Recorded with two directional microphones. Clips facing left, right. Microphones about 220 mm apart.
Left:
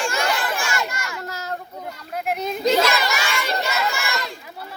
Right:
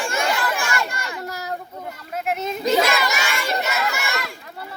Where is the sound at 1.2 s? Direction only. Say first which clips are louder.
Right 2 dB; 15° right (ahead or behind).